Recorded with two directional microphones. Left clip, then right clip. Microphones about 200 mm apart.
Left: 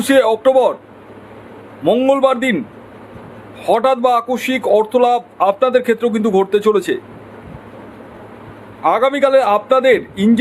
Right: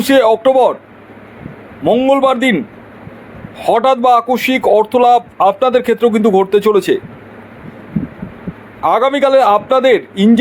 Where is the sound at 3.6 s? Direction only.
15° right (ahead or behind).